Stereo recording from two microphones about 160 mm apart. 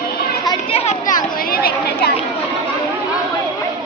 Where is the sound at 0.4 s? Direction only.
40° left (ahead or behind).